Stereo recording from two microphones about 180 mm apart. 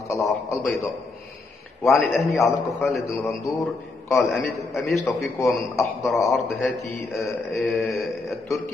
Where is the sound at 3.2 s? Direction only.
15° left (ahead or behind).